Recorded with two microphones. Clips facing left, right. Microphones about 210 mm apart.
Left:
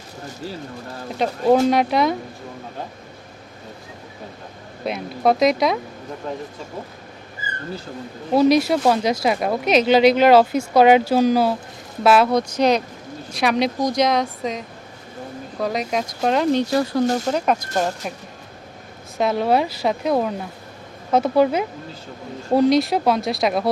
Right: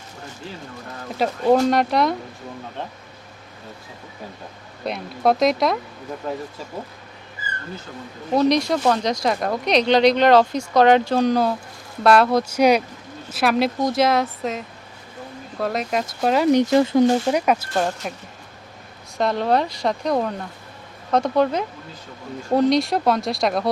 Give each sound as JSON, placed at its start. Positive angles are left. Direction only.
{"t": 1.1, "sound": "speech", "side_deg": 0}
{"t": 4.9, "sound": "speech", "side_deg": 0}
{"t": 8.3, "sound": "speech", "side_deg": 5}
{"t": 16.5, "sound": "speech", "side_deg": -20}
{"t": 17.7, "sound": "speech", "side_deg": 5}
{"t": 19.1, "sound": "speech", "side_deg": 5}